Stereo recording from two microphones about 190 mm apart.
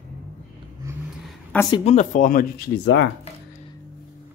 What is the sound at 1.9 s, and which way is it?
Speech, 40° left (ahead or behind).